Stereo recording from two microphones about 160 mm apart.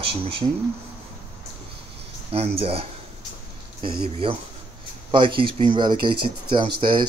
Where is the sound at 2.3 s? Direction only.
40° right (ahead or behind).